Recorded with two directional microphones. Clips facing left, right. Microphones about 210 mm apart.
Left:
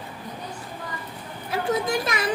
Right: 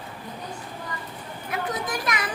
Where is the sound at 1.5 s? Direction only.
25° left (ahead or behind).